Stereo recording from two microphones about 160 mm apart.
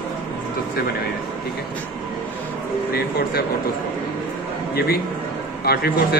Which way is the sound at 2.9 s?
75° left (ahead or behind).